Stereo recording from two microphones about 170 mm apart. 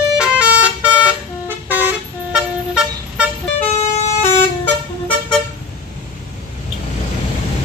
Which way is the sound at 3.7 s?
40° left (ahead or behind).